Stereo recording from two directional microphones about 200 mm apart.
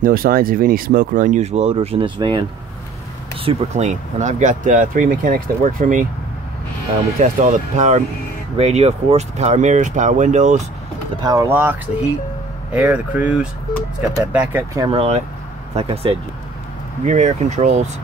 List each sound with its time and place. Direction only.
0.0 s speech: 45° right (ahead or behind); by 2.4 s 25° right (ahead or behind)
3.4 s speech: 35° right (ahead or behind)
7.2 s speech: 35° right (ahead or behind)
11.1 s speech: 15° right (ahead or behind)
12.7 s speech: 10° right (ahead or behind)
14.9 s speech: 30° right (ahead or behind)